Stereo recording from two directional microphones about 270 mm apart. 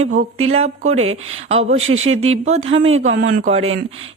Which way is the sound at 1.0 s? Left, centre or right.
Right.